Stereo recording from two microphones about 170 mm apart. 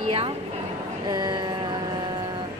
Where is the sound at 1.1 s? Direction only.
25° right (ahead or behind).